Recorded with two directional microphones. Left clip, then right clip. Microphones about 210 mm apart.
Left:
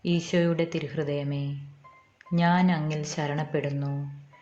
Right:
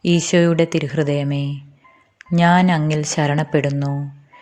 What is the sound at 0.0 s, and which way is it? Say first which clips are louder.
Speech: right 10 dB; 40° right (ahead or behind).